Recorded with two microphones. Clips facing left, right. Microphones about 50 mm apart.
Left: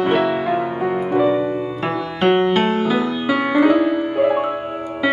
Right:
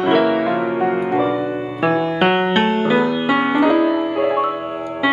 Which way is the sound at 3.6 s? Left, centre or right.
Centre.